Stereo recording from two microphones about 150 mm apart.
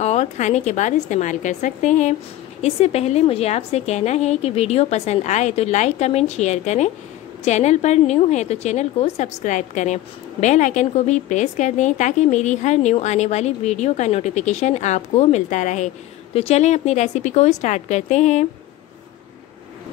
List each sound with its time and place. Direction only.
0.0 s a woman's voice: 50° left (ahead or behind)